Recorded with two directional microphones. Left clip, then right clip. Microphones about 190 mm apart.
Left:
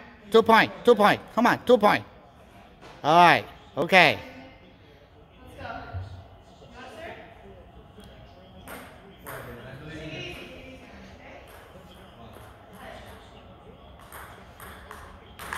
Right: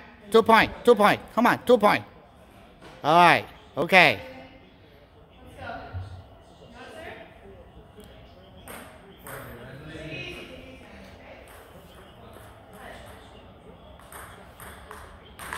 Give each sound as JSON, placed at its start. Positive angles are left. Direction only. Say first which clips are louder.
{"t": 0.3, "sound": "speech", "louder": "even", "side_deg": -5}